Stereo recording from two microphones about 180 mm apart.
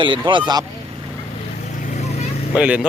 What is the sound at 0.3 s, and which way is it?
Speech, 25° right (ahead or behind).